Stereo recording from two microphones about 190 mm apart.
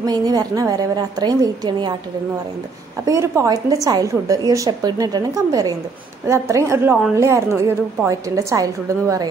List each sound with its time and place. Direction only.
0.0 s a woman's voice: 20° right (ahead or behind)
3.1 s a woman's voice: 15° right (ahead or behind)